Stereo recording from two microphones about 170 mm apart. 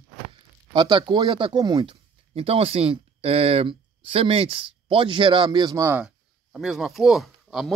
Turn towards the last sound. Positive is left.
turn(degrees=0)  # may be behind; listen again after turning